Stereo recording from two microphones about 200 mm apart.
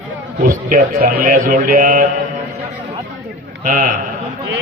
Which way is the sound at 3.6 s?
40° right (ahead or behind).